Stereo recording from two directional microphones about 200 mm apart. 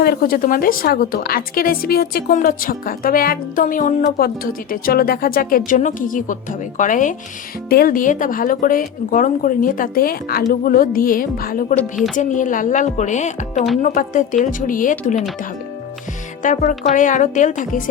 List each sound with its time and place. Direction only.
0.0 s a woman's voice: 50° left (ahead or behind)
11.8 s a woman's voice: centre (ahead or behind)
12.1 s speech: 40° left (ahead or behind)
16.4 s speech: 40° left (ahead or behind)